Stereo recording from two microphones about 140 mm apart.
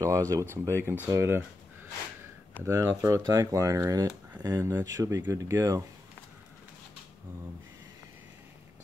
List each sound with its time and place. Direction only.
0.0 s speech: 25° right (ahead or behind)
2.6 s speech: 20° right (ahead or behind)